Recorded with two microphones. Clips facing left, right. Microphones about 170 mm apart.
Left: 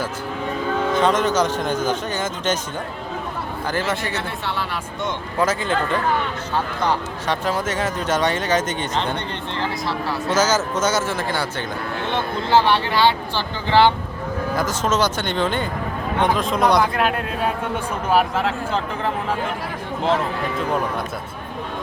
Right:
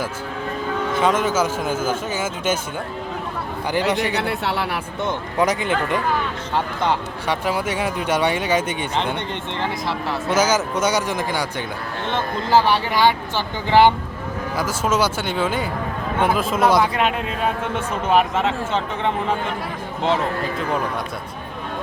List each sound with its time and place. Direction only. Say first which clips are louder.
0.9 s speech: even; 5° right (ahead or behind)
3.7 s speech: right 4 dB; 15° right (ahead or behind)
4.0 s speech: right 4 dB; 70° right (ahead or behind)
5.4 s speech: even; 15° right (ahead or behind)
7.3 s speech: even; 10° right (ahead or behind)